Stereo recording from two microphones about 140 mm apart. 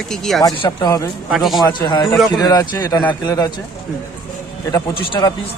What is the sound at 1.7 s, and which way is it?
A man's voice, 30° left (ahead or behind).